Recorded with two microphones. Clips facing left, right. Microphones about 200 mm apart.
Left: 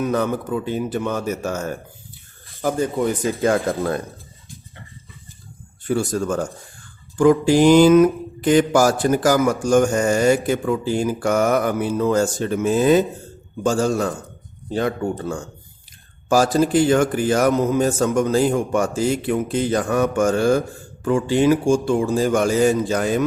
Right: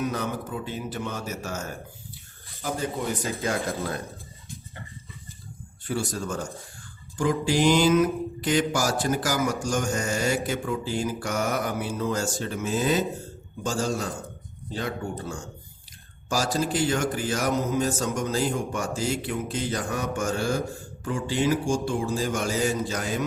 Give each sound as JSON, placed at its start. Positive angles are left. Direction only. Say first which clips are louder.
{"t": 0.1, "sound": "speech", "louder": "left 9 dB", "side_deg": 55}
{"t": 2.6, "sound": "mantra", "louder": "left 8 dB", "side_deg": 50}
{"t": 3.4, "sound": "speech", "louder": "left 10 dB", "side_deg": 55}
{"t": 5.9, "sound": "mantra", "louder": "left 8 dB", "side_deg": 50}
{"t": 13.7, "sound": "speech", "louder": "left 8 dB", "side_deg": 55}